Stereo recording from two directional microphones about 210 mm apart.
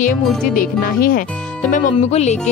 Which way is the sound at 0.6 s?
45° left (ahead or behind).